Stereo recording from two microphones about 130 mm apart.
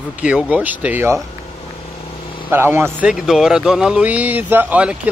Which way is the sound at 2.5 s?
15° right (ahead or behind).